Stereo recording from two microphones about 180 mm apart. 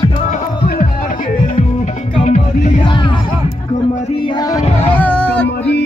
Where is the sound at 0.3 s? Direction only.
50° left (ahead or behind).